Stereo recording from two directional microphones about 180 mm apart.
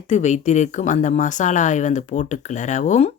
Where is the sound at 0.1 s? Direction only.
40° left (ahead or behind).